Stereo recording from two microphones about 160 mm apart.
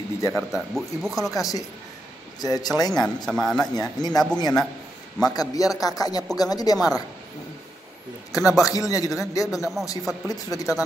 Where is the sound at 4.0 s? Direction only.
25° left (ahead or behind).